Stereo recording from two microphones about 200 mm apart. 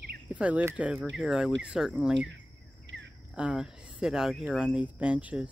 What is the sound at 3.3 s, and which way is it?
Speech, 5° right (ahead or behind).